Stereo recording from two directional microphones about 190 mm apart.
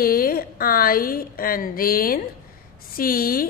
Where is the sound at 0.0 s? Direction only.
50° left (ahead or behind).